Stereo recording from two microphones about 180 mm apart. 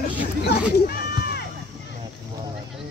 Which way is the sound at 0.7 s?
60° left (ahead or behind).